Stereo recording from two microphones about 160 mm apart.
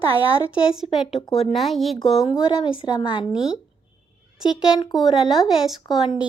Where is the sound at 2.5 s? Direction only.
30° left (ahead or behind).